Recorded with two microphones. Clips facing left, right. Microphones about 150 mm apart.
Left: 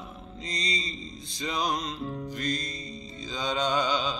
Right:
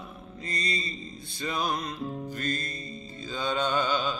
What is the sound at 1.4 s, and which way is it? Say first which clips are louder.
Music: even; 15° left (ahead or behind).